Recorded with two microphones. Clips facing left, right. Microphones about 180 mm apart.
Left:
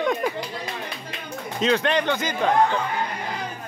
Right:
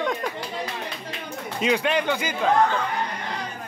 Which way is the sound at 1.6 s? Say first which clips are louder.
Left 1 dB; 10° right (ahead or behind).